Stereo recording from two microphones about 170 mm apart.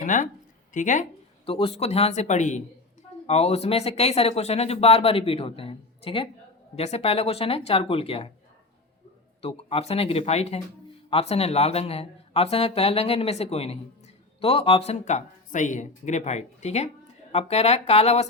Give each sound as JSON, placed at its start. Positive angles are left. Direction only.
{"t": 0.0, "sound": "speech", "side_deg": 50}
{"t": 1.5, "sound": "speech", "side_deg": 35}
{"t": 9.4, "sound": "speech", "side_deg": 35}